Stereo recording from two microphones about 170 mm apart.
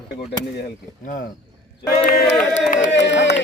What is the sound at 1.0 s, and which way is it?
Speech, 55° left (ahead or behind).